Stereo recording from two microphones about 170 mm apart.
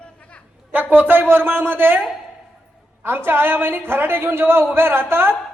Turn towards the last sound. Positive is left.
turn(degrees=-15)  # may be behind; listen again after turning